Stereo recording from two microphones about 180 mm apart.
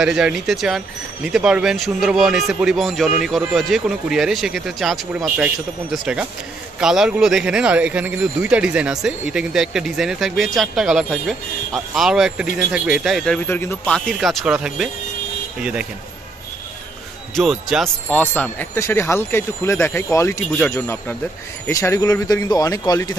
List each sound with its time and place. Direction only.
0.0 s speech: 5° right (ahead or behind)
17.4 s speech: centre (ahead or behind)
18.2 s speech: 10° left (ahead or behind)